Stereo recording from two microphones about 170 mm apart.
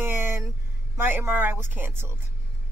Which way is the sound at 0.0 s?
15° right (ahead or behind).